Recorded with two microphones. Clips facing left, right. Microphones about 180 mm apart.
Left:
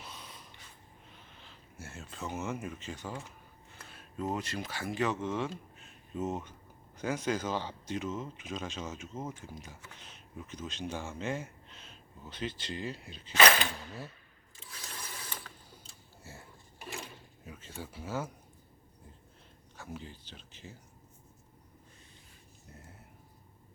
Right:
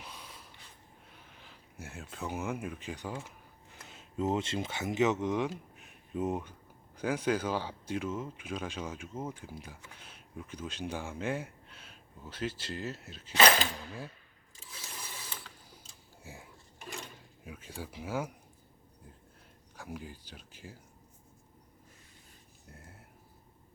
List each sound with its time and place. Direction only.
0.0 s snort: 10° right (ahead or behind)
1.1 s speech: 10° right (ahead or behind)
14.6 s ratchet: 10° right (ahead or behind)
16.2 s a sound: 15° right (ahead or behind)
17.4 s speech: 10° right (ahead or behind)
19.7 s speech: 10° right (ahead or behind)